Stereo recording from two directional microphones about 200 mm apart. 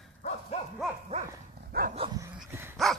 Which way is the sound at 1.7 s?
50° right (ahead or behind).